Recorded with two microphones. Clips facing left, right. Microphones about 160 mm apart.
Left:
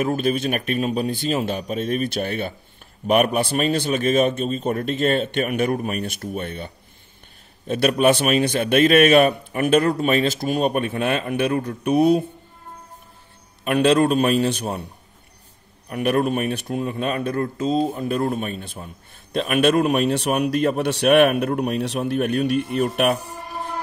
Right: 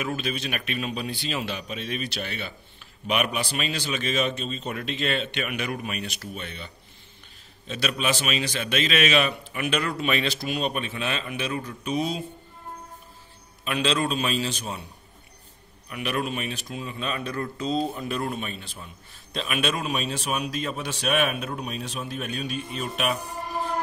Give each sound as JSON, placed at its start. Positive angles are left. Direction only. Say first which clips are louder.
{"t": 0.0, "sound": "a man's voice", "louder": "left 9 dB", "side_deg": 45}
{"t": 13.7, "sound": "a man's voice", "louder": "left 9 dB", "side_deg": 55}
{"t": 15.9, "sound": "a man's voice", "louder": "left 9 dB", "side_deg": 50}